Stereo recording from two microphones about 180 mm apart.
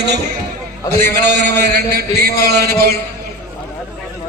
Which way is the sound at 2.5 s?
65° right (ahead or behind).